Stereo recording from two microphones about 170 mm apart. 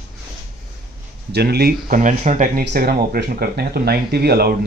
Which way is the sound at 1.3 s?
70° right (ahead or behind).